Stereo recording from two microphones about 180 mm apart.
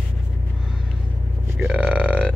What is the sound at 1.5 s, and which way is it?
Speech, 5° right (ahead or behind).